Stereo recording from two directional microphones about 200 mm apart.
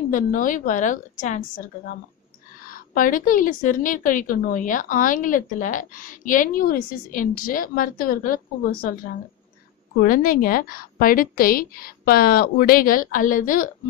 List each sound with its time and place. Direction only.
0.1 s a woman's voice: 40° left (ahead or behind)
2.7 s a woman's voice: 45° left (ahead or behind)
10.0 s a woman's voice: 45° left (ahead or behind)